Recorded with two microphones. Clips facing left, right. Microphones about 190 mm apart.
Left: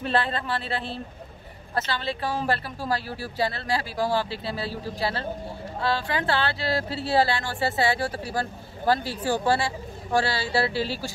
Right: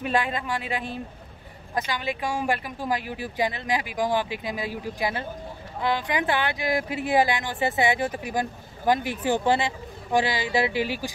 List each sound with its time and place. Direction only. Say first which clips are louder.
0.0 s speech: even; 15° right (ahead or behind)